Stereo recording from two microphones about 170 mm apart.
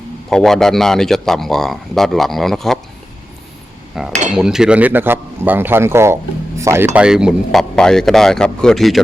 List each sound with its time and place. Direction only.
0.3 s speech: centre (ahead or behind)
3.9 s speech: centre (ahead or behind)